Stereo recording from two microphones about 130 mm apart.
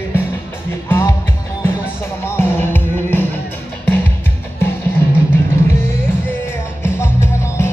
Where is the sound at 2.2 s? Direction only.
20° left (ahead or behind).